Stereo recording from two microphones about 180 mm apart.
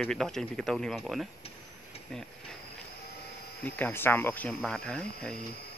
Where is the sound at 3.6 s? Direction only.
10° left (ahead or behind).